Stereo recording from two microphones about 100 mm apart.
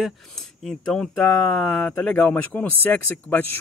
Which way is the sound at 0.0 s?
5° left (ahead or behind).